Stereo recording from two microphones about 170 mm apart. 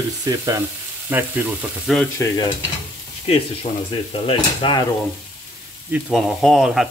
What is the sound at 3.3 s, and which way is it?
Speech, 35° left (ahead or behind).